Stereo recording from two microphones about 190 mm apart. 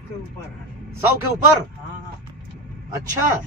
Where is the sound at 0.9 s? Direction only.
15° right (ahead or behind).